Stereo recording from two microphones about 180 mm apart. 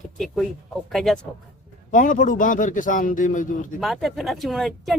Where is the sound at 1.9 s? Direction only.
45° left (ahead or behind).